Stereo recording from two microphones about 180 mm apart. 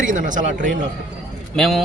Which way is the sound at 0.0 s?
45° right (ahead or behind).